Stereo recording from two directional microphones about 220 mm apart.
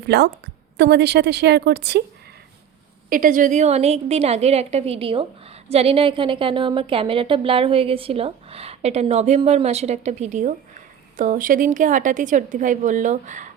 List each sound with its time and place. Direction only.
0.0 s a woman's voice: 50° right (ahead or behind)
3.1 s a woman's voice: 40° right (ahead or behind)